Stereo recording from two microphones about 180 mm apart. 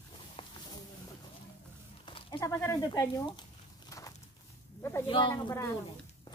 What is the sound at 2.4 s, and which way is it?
Speech, 15° left (ahead or behind).